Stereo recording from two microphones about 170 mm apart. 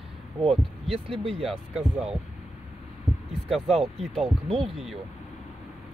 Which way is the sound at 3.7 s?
40° right (ahead or behind).